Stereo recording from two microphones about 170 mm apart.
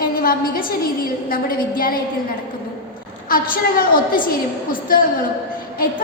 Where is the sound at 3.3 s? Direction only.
55° left (ahead or behind).